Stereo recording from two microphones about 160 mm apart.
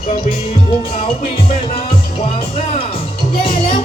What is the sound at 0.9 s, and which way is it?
Music, 35° left (ahead or behind).